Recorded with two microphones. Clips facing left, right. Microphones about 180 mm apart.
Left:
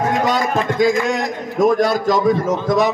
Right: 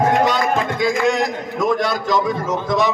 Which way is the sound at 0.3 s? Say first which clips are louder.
Left 1 dB; 45° left (ahead or behind).